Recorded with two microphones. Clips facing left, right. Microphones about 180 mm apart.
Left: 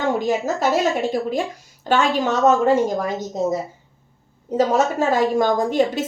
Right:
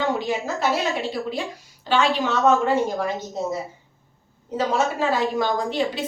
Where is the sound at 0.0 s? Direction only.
45° left (ahead or behind).